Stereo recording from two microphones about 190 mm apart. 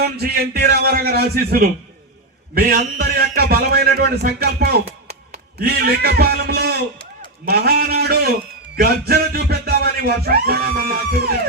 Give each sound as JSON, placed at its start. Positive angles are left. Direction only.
{"t": 0.0, "sound": "a man's voice", "side_deg": -55}